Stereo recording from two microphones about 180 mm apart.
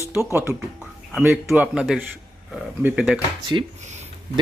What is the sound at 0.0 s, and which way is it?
Speech, 15° right (ahead or behind).